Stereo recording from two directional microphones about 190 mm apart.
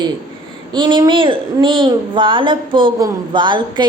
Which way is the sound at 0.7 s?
25° right (ahead or behind).